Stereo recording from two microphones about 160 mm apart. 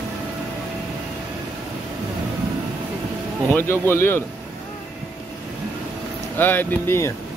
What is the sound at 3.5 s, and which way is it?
Speech, 15° left (ahead or behind).